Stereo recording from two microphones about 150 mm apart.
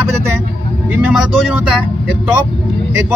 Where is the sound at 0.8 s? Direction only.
10° right (ahead or behind).